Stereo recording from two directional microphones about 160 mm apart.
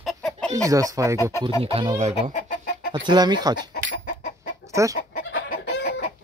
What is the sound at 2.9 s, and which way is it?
Speech, 25° right (ahead or behind).